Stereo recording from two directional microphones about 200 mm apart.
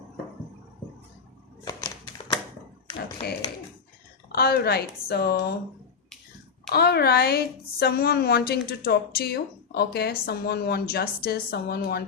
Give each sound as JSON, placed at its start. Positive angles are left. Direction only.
{"t": 1.6, "sound": "a sound", "side_deg": 15}
{"t": 4.3, "sound": "a woman's voice", "side_deg": 50}
{"t": 6.7, "sound": "a woman's voice", "side_deg": 55}